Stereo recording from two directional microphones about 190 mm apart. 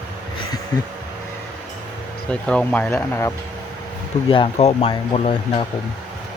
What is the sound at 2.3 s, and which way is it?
Speech, 5° left (ahead or behind).